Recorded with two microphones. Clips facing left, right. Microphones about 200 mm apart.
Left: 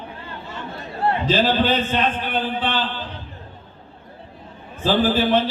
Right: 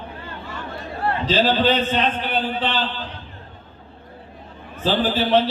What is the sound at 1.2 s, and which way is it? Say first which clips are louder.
A man's voice: right 2 dB; 50° left (ahead or behind).